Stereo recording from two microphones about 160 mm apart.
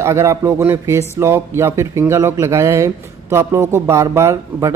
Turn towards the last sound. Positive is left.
turn(degrees=-20)  # may be behind; listen again after turning